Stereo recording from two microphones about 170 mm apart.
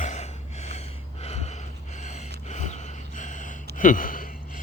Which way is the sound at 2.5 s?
45° left (ahead or behind).